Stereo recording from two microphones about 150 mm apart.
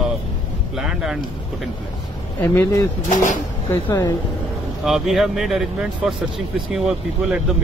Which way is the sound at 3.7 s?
20° left (ahead or behind).